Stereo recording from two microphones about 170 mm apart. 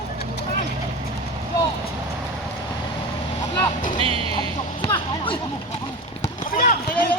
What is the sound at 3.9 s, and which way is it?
Music, 35° right (ahead or behind).